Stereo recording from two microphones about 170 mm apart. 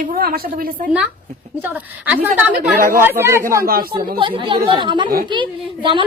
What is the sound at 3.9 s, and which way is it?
A woman's voice, 30° right (ahead or behind).